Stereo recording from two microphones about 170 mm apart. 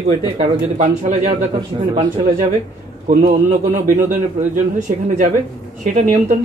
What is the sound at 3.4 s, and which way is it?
A man's voice, 50° right (ahead or behind).